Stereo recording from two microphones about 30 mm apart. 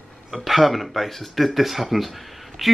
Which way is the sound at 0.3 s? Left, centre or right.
Centre.